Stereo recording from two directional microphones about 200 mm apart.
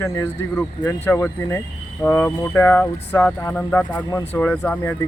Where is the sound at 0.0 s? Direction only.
15° left (ahead or behind).